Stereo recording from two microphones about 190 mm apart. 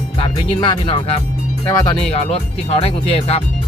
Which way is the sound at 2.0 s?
30° left (ahead or behind).